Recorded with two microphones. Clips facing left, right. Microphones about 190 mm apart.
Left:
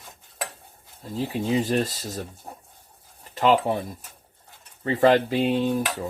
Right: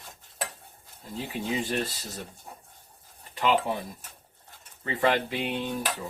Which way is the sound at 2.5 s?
45° left (ahead or behind).